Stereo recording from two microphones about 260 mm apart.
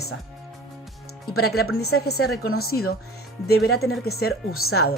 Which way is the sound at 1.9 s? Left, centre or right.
Left.